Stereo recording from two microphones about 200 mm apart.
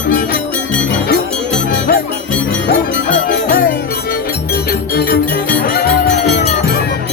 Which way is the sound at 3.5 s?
45° left (ahead or behind).